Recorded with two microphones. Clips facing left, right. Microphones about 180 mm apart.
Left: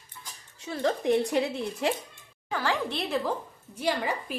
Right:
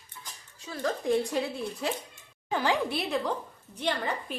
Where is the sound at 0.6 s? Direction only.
25° left (ahead or behind).